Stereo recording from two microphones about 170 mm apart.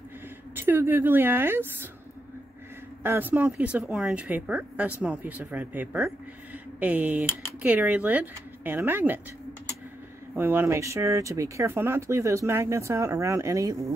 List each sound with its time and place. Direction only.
0.6 s speech: 10° right (ahead or behind)
3.0 s speech: 10° right (ahead or behind)
10.3 s speech: 10° right (ahead or behind)